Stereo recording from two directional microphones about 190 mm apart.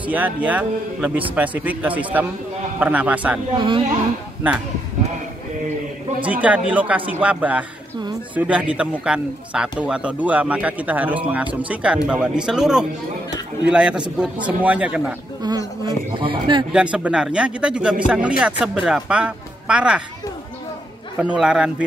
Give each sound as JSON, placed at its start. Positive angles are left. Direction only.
{"t": 0.0, "sound": "a man's voice", "side_deg": -10}
{"t": 3.5, "sound": "speech", "side_deg": -25}
{"t": 6.2, "sound": "a man's voice", "side_deg": -5}
{"t": 15.4, "sound": "speech", "side_deg": -20}
{"t": 16.7, "sound": "a man's voice", "side_deg": -5}
{"t": 21.2, "sound": "a man's voice", "side_deg": -5}